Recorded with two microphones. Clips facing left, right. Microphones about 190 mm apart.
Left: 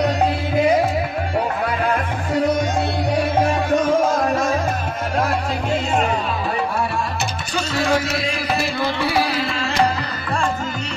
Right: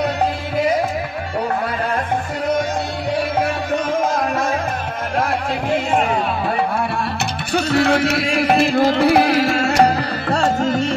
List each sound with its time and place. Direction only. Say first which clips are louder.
7.5 s music: right 4 dB; 60° right (ahead or behind); by 10.8 s 45° right (ahead or behind)